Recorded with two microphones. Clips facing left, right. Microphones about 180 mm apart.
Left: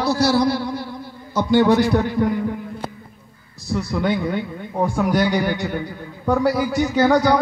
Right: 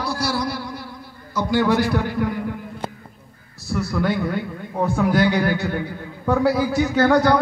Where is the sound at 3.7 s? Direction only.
20° left (ahead or behind).